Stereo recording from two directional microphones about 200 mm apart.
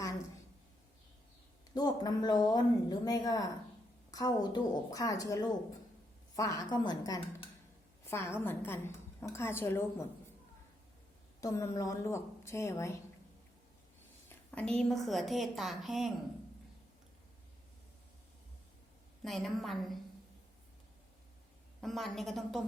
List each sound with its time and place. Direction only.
1.7 s a woman's voice: 20° left (ahead or behind)
11.3 s a woman's voice: 15° left (ahead or behind)
14.3 s a woman's voice: 5° left (ahead or behind)
19.2 s a woman's voice: centre (ahead or behind)
21.8 s a woman's voice: centre (ahead or behind)